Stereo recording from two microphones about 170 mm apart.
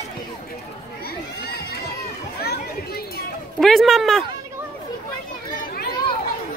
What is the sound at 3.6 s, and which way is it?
Speech, centre (ahead or behind).